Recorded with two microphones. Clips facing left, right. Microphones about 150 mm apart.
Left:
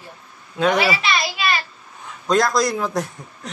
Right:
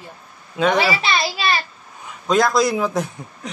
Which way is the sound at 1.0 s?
30° right (ahead or behind).